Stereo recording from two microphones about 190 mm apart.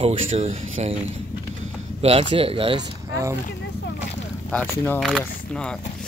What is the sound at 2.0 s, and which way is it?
Speech, 30° right (ahead or behind).